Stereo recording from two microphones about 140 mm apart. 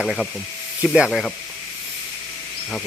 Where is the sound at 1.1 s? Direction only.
5° left (ahead or behind).